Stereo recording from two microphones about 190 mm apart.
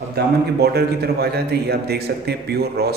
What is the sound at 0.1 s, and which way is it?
A man's voice, 55° right (ahead or behind).